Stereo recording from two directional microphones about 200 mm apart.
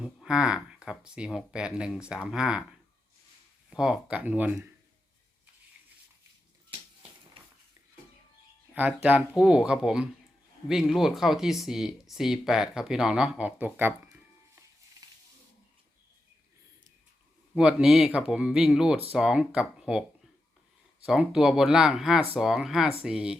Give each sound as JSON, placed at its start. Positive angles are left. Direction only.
{"t": 0.0, "sound": "speech", "side_deg": -5}
{"t": 3.7, "sound": "speech", "side_deg": -5}
{"t": 8.7, "sound": "speech", "side_deg": -10}
{"t": 15.0, "sound": "a sound", "side_deg": -20}
{"t": 17.6, "sound": "speech", "side_deg": -5}
{"t": 21.1, "sound": "speech", "side_deg": -5}